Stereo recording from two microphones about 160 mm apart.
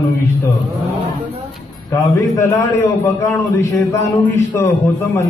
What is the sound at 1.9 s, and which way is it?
A man's voice, 20° left (ahead or behind).